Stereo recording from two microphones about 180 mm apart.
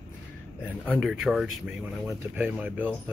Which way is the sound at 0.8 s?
5° right (ahead or behind).